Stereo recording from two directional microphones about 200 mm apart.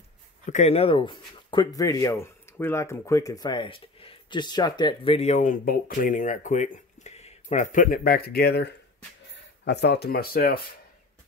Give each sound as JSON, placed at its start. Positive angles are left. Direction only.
{"t": 0.5, "sound": "speech", "side_deg": 35}